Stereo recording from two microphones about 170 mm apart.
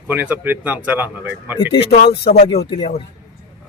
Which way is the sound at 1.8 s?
65° left (ahead or behind).